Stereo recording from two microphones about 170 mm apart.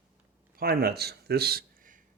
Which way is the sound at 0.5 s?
65° right (ahead or behind).